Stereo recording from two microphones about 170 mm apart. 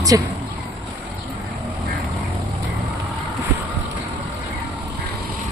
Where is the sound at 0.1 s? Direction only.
20° right (ahead or behind).